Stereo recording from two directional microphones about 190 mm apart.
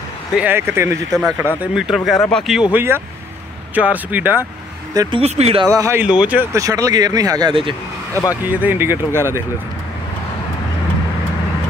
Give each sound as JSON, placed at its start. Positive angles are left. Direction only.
{"t": 0.3, "sound": "speech", "side_deg": -10}
{"t": 2.7, "sound": "speech", "side_deg": -10}
{"t": 5.2, "sound": "speech", "side_deg": -35}
{"t": 5.7, "sound": "speech", "side_deg": -15}
{"t": 8.1, "sound": "speech", "side_deg": 15}
{"t": 8.5, "sound": "speech", "side_deg": -10}